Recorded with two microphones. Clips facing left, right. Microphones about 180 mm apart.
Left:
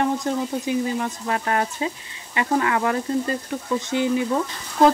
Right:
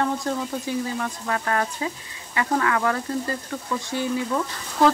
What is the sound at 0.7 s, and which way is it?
Speech, 20° left (ahead or behind).